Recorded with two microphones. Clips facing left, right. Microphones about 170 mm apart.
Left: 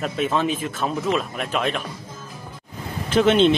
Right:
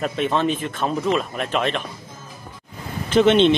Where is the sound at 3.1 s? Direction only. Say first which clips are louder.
Right 1 dB; 5° left (ahead or behind).